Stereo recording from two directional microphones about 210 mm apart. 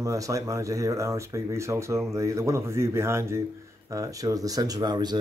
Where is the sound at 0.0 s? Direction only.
15° right (ahead or behind).